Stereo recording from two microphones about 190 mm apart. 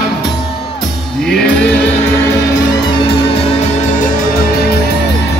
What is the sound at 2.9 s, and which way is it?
Music, 30° left (ahead or behind).